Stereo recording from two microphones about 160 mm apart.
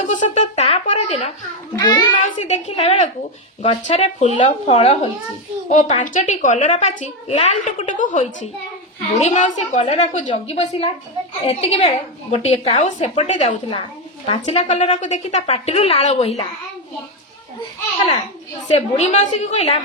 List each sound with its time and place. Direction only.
0.1 s a sound: 45° left (ahead or behind)
1.8 s a child's voice: 25° left (ahead or behind)
2.2 s a woman's voice: 45° left (ahead or behind)
18.7 s a woman's voice: 45° left (ahead or behind)